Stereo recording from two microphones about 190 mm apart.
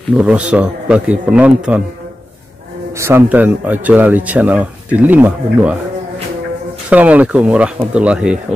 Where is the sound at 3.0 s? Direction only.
10° right (ahead or behind).